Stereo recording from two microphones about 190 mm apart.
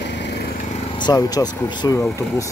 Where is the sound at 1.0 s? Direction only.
20° left (ahead or behind).